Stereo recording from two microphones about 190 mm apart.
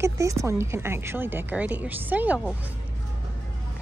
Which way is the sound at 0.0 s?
15° right (ahead or behind).